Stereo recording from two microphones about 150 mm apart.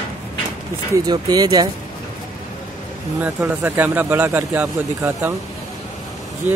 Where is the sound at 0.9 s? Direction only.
25° right (ahead or behind).